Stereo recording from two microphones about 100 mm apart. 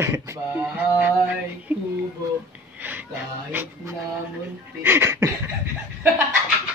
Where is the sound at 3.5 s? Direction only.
20° right (ahead or behind).